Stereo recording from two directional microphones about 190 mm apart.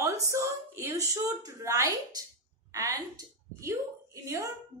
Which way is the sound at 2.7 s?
20° right (ahead or behind).